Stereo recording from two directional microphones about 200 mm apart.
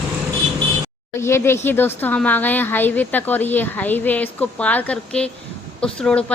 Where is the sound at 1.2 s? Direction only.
10° left (ahead or behind).